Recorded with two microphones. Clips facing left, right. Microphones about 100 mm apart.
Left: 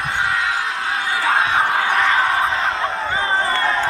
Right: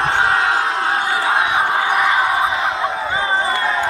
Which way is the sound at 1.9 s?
10° right (ahead or behind).